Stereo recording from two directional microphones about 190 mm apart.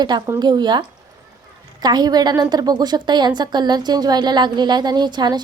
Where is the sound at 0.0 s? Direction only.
20° right (ahead or behind).